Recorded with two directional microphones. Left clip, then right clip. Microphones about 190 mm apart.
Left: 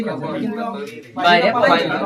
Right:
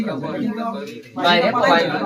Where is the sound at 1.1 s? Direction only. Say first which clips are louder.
Left 2 dB; 15° left (ahead or behind).